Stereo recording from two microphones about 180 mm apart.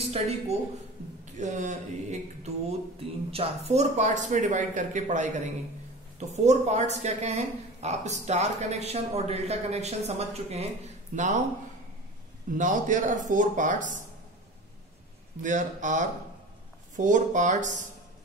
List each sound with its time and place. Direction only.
0.0 s speech: 35° right (ahead or behind)
12.5 s speech: 45° right (ahead or behind)
15.4 s speech: 45° right (ahead or behind)